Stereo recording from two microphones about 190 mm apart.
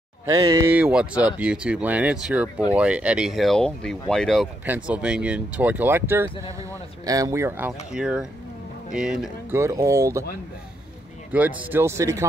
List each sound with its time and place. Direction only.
0.3 s speech: 20° right (ahead or behind); by 9.6 s 5° right (ahead or behind)
9.6 s speech: 15° right (ahead or behind)
11.3 s speech: 10° right (ahead or behind)